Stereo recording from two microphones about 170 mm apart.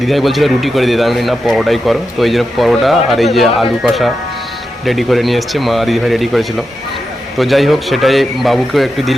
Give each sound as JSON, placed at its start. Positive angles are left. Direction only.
{"t": 0.0, "sound": "speech", "side_deg": 0}